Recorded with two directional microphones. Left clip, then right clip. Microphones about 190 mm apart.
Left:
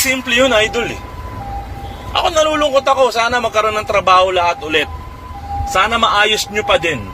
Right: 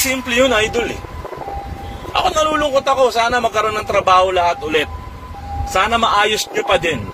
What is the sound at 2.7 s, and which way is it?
A man's voice, 10° right (ahead or behind).